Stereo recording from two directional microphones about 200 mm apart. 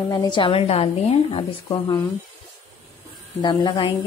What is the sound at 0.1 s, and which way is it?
A woman's voice, 20° left (ahead or behind).